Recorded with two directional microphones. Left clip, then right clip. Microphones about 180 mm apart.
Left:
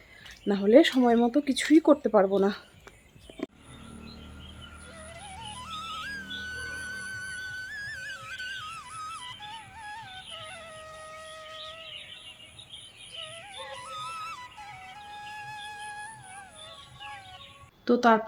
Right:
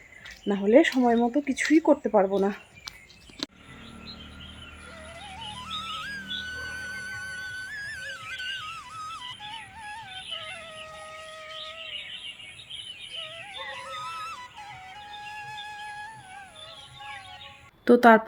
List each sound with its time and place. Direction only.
0.4 s speech: centre (ahead or behind)
5.2 s music: centre (ahead or behind)
13.1 s yodeling: centre (ahead or behind)
17.8 s a sound: 35° right (ahead or behind)